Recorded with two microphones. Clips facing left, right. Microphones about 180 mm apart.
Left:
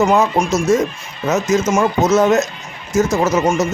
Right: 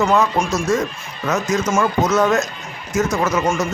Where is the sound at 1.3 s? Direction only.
25° left (ahead or behind).